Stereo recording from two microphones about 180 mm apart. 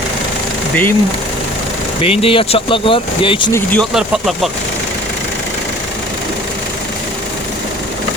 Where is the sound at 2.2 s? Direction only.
30° left (ahead or behind).